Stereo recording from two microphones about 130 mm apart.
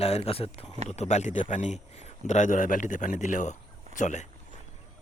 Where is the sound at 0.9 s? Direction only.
60° left (ahead or behind).